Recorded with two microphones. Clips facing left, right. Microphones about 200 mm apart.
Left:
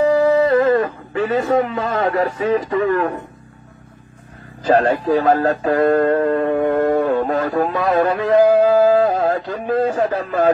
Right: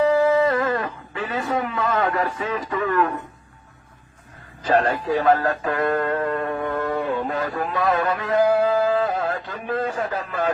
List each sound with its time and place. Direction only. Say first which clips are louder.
0.0 s speech: left 3 dB; 45° left (ahead or behind)
5.1 s speech: left 2 dB; 30° left (ahead or behind)
6.6 s a sound: left 8 dB; 50° left (ahead or behind)
9.7 s speech: left 7 dB; 35° left (ahead or behind)